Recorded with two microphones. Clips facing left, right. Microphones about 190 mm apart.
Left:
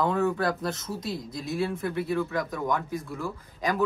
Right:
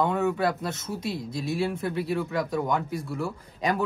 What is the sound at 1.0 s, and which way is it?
Speech, 30° right (ahead or behind).